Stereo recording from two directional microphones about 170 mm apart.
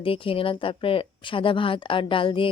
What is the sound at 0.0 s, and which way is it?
A woman's voice, 30° left (ahead or behind).